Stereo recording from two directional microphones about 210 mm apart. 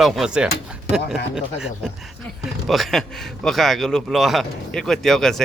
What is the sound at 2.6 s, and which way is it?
A man's voice, centre (ahead or behind).